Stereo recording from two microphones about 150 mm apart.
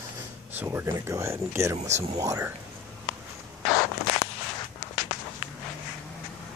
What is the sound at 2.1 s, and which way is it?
Speech, 20° right (ahead or behind).